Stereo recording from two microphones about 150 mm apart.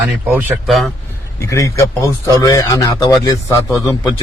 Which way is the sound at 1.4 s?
20° left (ahead or behind).